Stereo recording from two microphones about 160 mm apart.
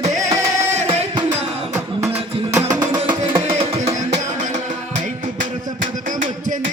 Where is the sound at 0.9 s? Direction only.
35° right (ahead or behind).